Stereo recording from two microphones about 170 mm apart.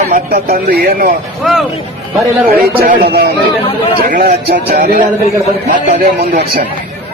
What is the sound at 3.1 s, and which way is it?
A man's voice, 70° right (ahead or behind).